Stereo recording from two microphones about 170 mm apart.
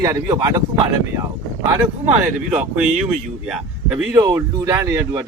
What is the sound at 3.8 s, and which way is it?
Speech, 10° right (ahead or behind).